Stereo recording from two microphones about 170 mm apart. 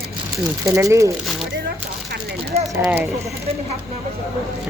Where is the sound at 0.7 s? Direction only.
20° right (ahead or behind).